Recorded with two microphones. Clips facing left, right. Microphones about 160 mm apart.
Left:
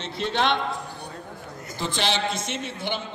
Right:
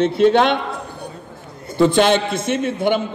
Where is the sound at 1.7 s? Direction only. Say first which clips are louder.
Right 13 dB; 55° right (ahead or behind).